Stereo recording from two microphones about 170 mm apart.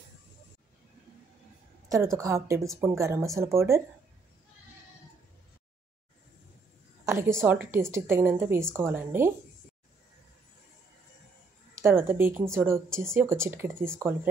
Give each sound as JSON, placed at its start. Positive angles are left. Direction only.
{"t": 1.9, "sound": "a woman's voice", "side_deg": -20}
{"t": 7.1, "sound": "a woman's voice", "side_deg": -15}
{"t": 11.8, "sound": "a woman's voice", "side_deg": -15}